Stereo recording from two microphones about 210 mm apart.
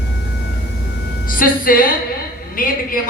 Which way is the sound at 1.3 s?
40° left (ahead or behind).